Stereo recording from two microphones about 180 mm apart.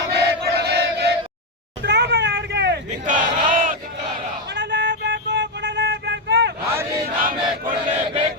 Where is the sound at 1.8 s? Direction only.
70° right (ahead or behind).